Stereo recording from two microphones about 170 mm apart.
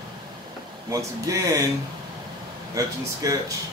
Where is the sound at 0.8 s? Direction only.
20° right (ahead or behind).